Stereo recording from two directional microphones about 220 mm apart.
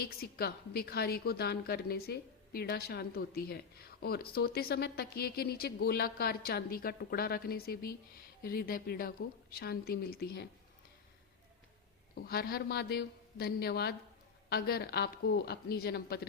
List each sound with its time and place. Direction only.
0.0 s a woman's voice: 45° left (ahead or behind)
12.1 s a woman's voice: 45° left (ahead or behind)